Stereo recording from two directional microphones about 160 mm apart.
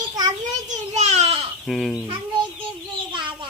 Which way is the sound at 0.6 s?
45° right (ahead or behind).